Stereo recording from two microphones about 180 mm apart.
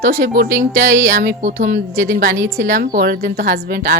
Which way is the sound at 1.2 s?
45° right (ahead or behind).